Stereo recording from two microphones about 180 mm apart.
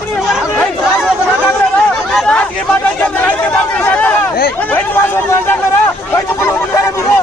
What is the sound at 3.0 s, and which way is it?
Chatter, 5° left (ahead or behind).